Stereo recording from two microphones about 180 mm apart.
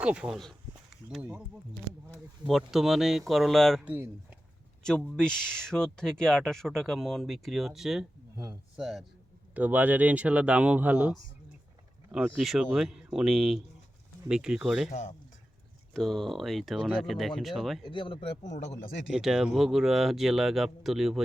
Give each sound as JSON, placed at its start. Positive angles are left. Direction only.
{"t": 0.0, "sound": "speech", "side_deg": -5}
{"t": 2.5, "sound": "speech", "side_deg": 0}
{"t": 4.9, "sound": "a man's voice", "side_deg": 5}
{"t": 12.3, "sound": "speech", "side_deg": 0}
{"t": 14.8, "sound": "speech", "side_deg": 40}
{"t": 15.9, "sound": "speech", "side_deg": 0}
{"t": 17.8, "sound": "speech", "side_deg": 25}
{"t": 19.1, "sound": "speech", "side_deg": 0}